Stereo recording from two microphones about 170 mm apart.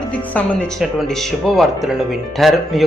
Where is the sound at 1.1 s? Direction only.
5° left (ahead or behind).